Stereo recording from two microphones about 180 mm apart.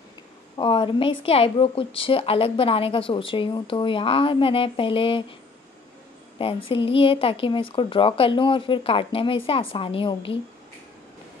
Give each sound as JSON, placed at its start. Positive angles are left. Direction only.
{"t": 0.6, "sound": "a woman's voice", "side_deg": 25}
{"t": 6.3, "sound": "a woman's voice", "side_deg": 30}